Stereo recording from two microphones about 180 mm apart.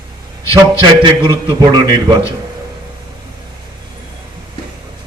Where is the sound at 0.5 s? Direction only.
25° right (ahead or behind).